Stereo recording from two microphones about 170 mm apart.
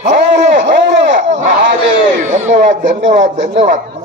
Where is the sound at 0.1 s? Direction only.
90° right.